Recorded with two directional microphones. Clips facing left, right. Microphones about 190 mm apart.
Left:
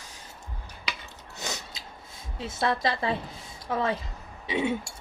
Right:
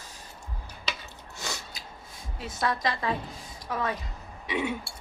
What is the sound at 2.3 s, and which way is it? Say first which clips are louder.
A woman's voice: left 2 dB; 25° left (ahead or behind).